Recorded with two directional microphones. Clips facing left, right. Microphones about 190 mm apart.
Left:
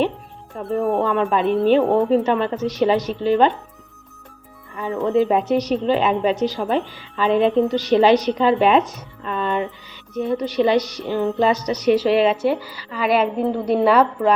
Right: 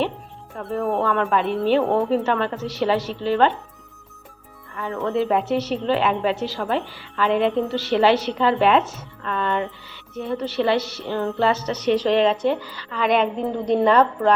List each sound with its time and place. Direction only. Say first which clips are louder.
0.8 s speech: left 3 dB; centre (ahead or behind)
1.0 s a woman's voice: left 2 dB; 15° left (ahead or behind)
4.7 s a woman's voice: left 4 dB; 15° left (ahead or behind)